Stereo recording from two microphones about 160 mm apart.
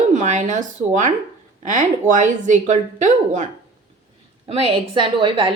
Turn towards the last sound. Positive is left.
turn(degrees=-35)  # may be behind; listen again after turning